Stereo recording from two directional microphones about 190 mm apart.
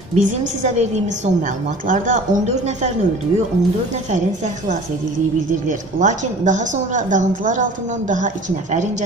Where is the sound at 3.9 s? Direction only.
40° right (ahead or behind).